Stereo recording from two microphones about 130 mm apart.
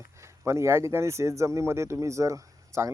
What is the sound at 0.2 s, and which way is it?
Speech, 20° right (ahead or behind).